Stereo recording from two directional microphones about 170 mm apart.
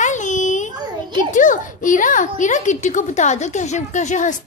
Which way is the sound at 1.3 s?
50° left (ahead or behind).